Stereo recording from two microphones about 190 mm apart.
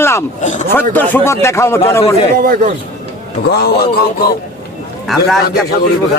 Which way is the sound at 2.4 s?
45° right (ahead or behind).